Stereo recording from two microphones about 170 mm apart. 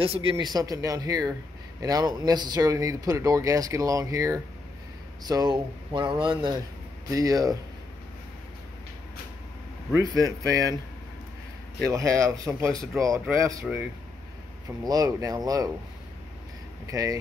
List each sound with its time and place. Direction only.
0.0 s speech: 30° right (ahead or behind)
9.9 s speech: 20° right (ahead or behind)
11.9 s speech: 20° right (ahead or behind)
14.8 s speech: 20° right (ahead or behind)
16.8 s speech: 20° right (ahead or behind)